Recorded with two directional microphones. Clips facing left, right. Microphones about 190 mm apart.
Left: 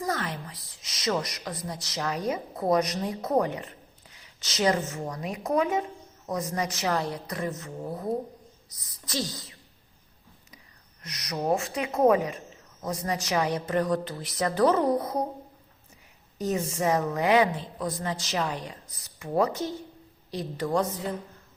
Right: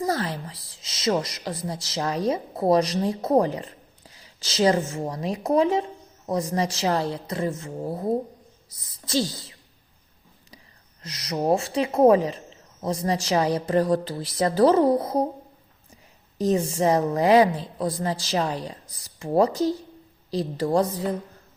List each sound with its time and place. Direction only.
0.0 s a woman's voice: 30° right (ahead or behind)
11.0 s a woman's voice: 30° right (ahead or behind)
16.4 s a woman's voice: 30° right (ahead or behind)